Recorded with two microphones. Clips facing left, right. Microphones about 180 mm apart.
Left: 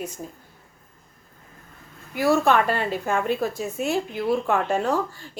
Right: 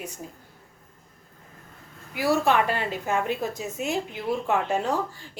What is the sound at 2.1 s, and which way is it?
Speech, 45° left (ahead or behind).